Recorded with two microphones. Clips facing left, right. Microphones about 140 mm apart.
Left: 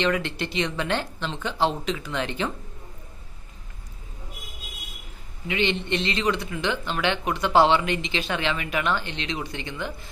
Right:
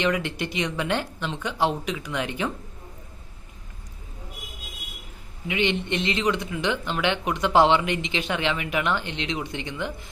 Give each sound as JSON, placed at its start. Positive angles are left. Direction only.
{"t": 0.0, "sound": "speech", "side_deg": -15}
{"t": 5.5, "sound": "speech", "side_deg": -15}